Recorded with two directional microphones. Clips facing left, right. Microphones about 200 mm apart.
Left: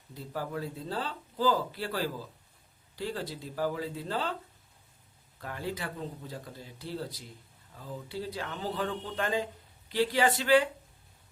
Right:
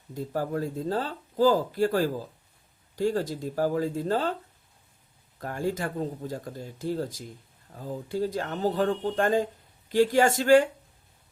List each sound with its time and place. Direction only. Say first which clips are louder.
0.1 s speech: right 7 dB; 45° right (ahead or behind)
5.4 s speech: right 7 dB; 45° right (ahead or behind)